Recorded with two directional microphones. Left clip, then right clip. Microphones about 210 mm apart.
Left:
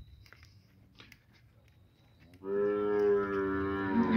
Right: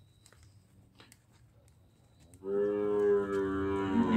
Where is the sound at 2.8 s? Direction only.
20° right (ahead or behind).